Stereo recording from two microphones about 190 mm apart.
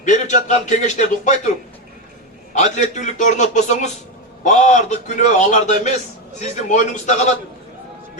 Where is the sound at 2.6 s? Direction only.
40° left (ahead or behind).